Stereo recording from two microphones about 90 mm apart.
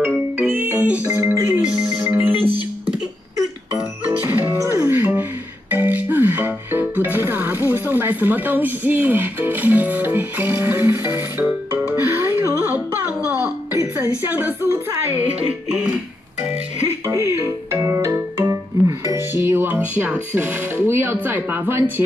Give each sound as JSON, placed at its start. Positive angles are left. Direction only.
{"t": 0.4, "sound": "music", "side_deg": -20}
{"t": 1.3, "sound": "music", "side_deg": -30}
{"t": 2.0, "sound": "music", "side_deg": -20}
{"t": 4.3, "sound": "music", "side_deg": -25}
{"t": 13.9, "sound": "a sound", "side_deg": -20}
{"t": 17.1, "sound": "music", "side_deg": -30}